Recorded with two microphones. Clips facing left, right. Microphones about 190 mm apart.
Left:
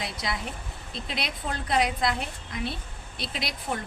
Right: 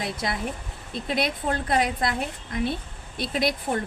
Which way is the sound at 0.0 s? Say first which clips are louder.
Right 4 dB; 50° right (ahead or behind).